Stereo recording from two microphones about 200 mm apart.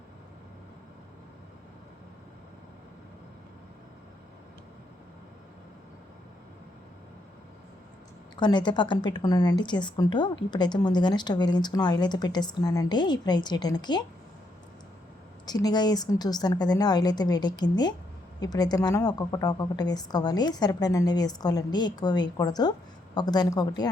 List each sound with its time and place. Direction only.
8.4 s speech: 20° left (ahead or behind)
15.4 s speech: 20° left (ahead or behind)